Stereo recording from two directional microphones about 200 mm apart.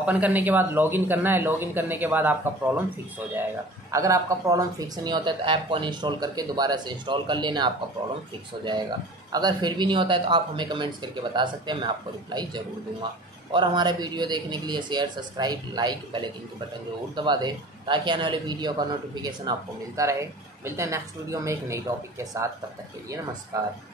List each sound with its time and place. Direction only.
0.0 s a man's voice: 10° right (ahead or behind)
3.9 s speech: 15° right (ahead or behind)
9.3 s a man's voice: 20° right (ahead or behind)
23.5 s a man's voice: 15° right (ahead or behind)